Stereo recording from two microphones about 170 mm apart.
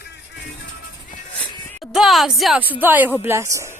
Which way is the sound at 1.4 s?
10° left (ahead or behind).